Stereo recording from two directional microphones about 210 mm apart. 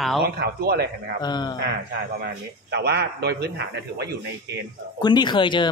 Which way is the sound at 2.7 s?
55° right (ahead or behind).